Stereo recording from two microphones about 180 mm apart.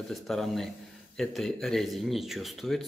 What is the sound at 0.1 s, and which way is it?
Speech, centre (ahead or behind).